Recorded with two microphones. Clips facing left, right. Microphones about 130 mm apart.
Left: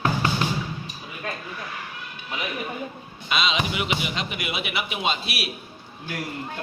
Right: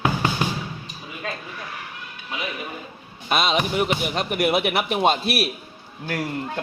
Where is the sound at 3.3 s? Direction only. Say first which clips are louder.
Right 3 dB; 50° right (ahead or behind).